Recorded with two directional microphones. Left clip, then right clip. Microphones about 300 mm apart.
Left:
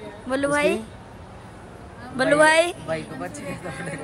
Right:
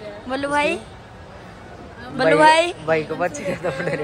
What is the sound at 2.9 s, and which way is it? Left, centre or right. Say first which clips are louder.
A man's voice: right 9 dB; right.